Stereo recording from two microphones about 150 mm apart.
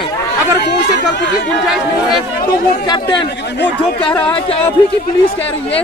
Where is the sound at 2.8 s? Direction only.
30° left (ahead or behind).